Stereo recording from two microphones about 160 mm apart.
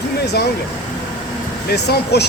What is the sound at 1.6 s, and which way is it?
Speech, 90° left.